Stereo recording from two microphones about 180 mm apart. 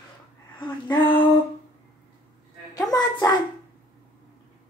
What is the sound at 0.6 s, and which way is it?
Speech, 25° left (ahead or behind).